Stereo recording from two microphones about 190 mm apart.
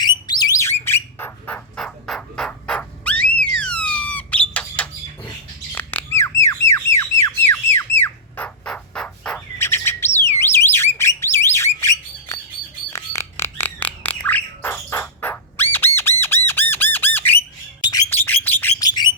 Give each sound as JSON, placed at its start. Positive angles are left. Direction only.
{"t": 0.0, "sound": "bird", "side_deg": 20}
{"t": 5.7, "sound": "squawk", "side_deg": 10}
{"t": 9.6, "sound": "bird", "side_deg": 15}
{"t": 10.4, "sound": "alarm", "side_deg": 15}
{"t": 12.9, "sound": "bird", "side_deg": 15}
{"t": 16.0, "sound": "squawk", "side_deg": 10}
{"t": 17.9, "sound": "bird", "side_deg": 10}
{"t": 18.9, "sound": "bird", "side_deg": 20}